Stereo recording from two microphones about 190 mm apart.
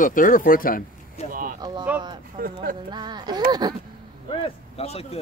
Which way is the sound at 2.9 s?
20° right (ahead or behind).